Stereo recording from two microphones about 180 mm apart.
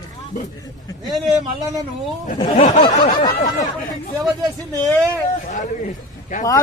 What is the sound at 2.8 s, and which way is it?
Speech, 25° left (ahead or behind).